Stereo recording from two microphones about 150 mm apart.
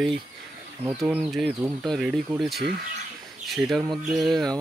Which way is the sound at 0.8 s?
15° right (ahead or behind).